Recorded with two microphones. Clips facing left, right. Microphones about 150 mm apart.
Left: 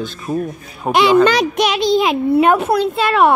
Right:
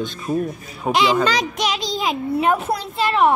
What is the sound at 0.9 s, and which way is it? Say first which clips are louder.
A child's voice: left 6 dB; 60° left (ahead or behind).